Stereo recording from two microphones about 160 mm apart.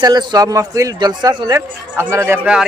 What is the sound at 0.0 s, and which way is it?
A man's voice, 25° right (ahead or behind).